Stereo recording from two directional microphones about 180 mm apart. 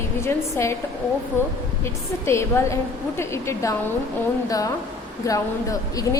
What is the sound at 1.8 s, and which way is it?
A woman's voice, 15° left (ahead or behind).